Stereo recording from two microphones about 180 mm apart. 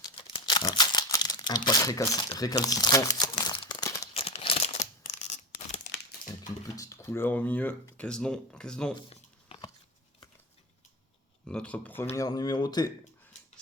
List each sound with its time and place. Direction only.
0.0 s crumpling: 25° left (ahead or behind)
4.1 s a sound: 35° left (ahead or behind)
6.7 s speech: 15° left (ahead or behind)
9.0 s a sound: 30° left (ahead or behind)
11.4 s speech: 5° left (ahead or behind)
12.1 s speech: 20° left (ahead or behind)